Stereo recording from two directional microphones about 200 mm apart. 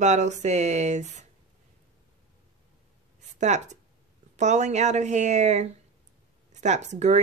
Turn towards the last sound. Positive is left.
turn(degrees=-35)  # may be behind; listen again after turning